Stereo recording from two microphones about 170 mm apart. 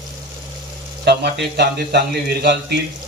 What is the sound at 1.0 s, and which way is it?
Speech, 75° right (ahead or behind).